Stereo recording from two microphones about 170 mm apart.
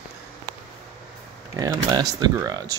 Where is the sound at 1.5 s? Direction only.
20° right (ahead or behind).